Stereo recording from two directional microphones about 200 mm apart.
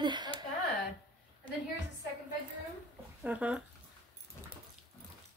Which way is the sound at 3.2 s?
5° right (ahead or behind).